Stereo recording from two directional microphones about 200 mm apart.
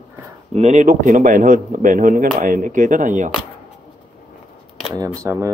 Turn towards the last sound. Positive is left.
turn(degrees=-15)  # may be behind; listen again after turning